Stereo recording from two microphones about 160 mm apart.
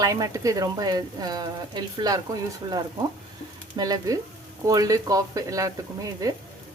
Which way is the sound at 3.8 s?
25° right (ahead or behind).